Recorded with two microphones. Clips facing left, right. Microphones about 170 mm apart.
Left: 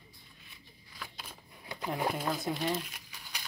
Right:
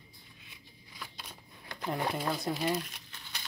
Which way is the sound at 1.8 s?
Centre (ahead or behind).